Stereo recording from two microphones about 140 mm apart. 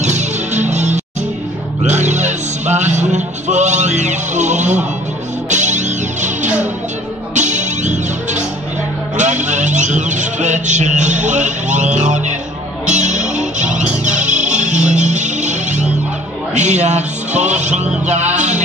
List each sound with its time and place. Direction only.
0.0 s music: 55° right (ahead or behind)